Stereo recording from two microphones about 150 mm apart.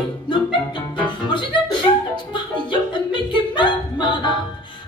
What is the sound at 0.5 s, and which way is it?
Music, 30° left (ahead or behind).